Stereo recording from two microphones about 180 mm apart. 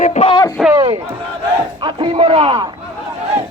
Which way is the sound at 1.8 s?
30° right (ahead or behind).